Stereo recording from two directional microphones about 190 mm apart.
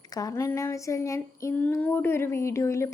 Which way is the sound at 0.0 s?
20° left (ahead or behind).